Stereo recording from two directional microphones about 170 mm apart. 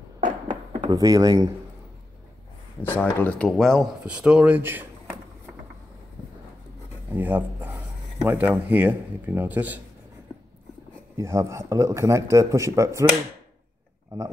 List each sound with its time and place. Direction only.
0.2 s a sound: 25° right (ahead or behind)
2.8 s speech: 10° left (ahead or behind); by 4.8 s 10° right (ahead or behind)
7.1 s speech: 10° right (ahead or behind)
10.3 s a sound: 20° left (ahead or behind)
11.1 s speech: 15° right (ahead or behind)
14.1 s speech: 20° right (ahead or behind)